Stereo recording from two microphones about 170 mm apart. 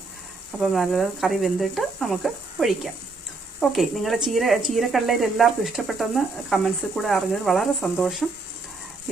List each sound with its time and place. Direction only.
0.6 s speech: centre (ahead or behind)